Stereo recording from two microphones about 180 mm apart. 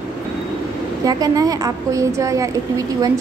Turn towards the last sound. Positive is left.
turn(degrees=-20)  # may be behind; listen again after turning